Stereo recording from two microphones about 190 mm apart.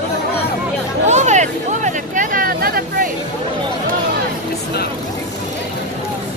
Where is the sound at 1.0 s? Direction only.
40° right (ahead or behind).